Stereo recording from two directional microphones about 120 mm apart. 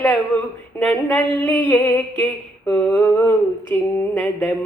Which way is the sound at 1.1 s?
15° left (ahead or behind).